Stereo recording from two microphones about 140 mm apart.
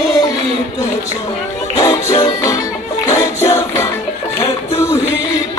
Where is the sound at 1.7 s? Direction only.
25° left (ahead or behind).